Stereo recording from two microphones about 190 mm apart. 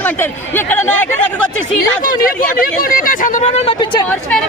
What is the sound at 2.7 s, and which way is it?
Speech, 45° left (ahead or behind).